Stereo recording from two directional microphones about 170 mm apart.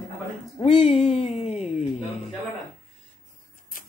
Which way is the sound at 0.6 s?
40° left (ahead or behind).